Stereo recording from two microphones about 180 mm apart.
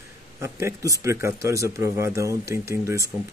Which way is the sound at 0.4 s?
15° right (ahead or behind).